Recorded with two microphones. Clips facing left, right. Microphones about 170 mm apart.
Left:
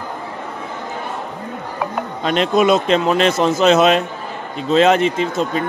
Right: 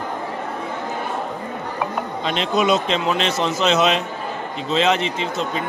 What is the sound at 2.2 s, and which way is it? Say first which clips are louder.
A man's voice: left 5 dB; 50° left (ahead or behind).